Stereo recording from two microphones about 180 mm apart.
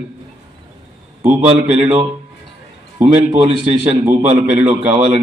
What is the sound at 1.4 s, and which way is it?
Speech, 35° right (ahead or behind).